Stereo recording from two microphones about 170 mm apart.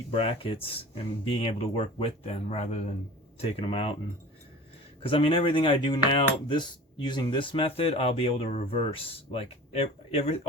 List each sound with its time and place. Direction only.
0.1 s speech: 35° left (ahead or behind)
5.0 s cutlery: 30° left (ahead or behind)
6.5 s speech: 25° left (ahead or behind)